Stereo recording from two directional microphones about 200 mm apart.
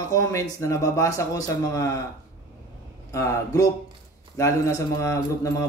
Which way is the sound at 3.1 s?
15° left (ahead or behind).